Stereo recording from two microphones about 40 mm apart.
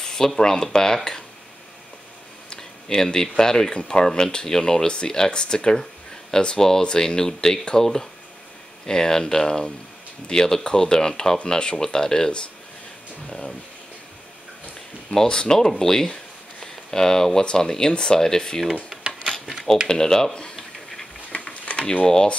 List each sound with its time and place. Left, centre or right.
0.0 s a sound: centre
0.4 s speech: centre
2.5 s speech: centre
15.0 s speech: centre
19.9 s speech: centre
20.5 s a sound: centre
21.6 s mechanisms: left
22.0 s speech: centre